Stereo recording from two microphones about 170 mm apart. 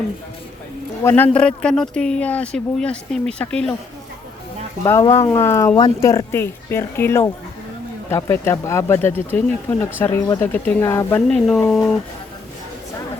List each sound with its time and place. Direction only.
1.0 s speech: 10° left (ahead or behind)
4.8 s speech: 15° left (ahead or behind)
11.3 s speech: centre (ahead or behind)